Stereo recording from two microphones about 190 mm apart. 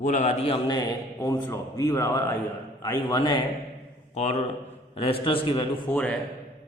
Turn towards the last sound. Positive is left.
turn(degrees=5)  # may be behind; listen again after turning